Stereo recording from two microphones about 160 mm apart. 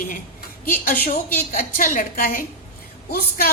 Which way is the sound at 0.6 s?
60° left (ahead or behind).